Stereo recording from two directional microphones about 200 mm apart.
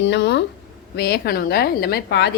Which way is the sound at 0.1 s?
60° left (ahead or behind).